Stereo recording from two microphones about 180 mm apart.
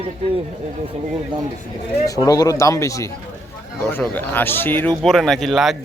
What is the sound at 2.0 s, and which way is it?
Speech, 20° left (ahead or behind).